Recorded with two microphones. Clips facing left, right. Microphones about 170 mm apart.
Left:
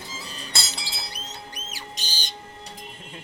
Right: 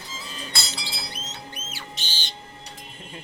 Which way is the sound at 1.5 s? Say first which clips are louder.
Even; 40° left (ahead or behind).